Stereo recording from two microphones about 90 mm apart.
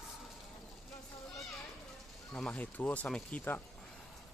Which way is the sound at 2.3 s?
10° left (ahead or behind).